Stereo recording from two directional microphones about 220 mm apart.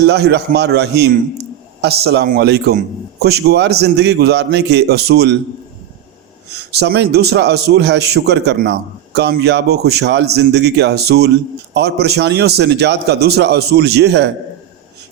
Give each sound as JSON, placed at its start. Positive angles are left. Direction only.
{"t": 0.0, "sound": "a man's voice", "side_deg": -50}
{"t": 6.5, "sound": "a man's voice", "side_deg": -50}